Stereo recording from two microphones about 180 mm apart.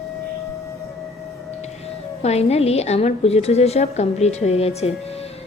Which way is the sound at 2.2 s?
35° left (ahead or behind).